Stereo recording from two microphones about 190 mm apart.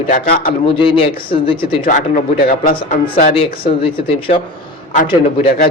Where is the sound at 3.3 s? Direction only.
30° left (ahead or behind).